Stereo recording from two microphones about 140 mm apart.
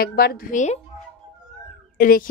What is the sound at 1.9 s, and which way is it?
Speech, 80° left.